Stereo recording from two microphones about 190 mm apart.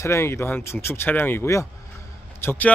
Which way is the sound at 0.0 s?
15° left (ahead or behind).